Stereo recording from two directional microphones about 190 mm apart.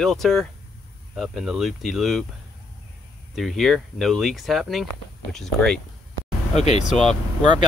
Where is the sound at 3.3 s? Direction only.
Centre (ahead or behind).